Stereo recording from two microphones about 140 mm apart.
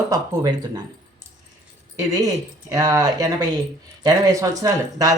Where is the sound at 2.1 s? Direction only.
25° right (ahead or behind).